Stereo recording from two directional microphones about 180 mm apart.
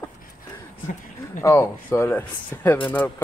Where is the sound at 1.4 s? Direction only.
15° left (ahead or behind).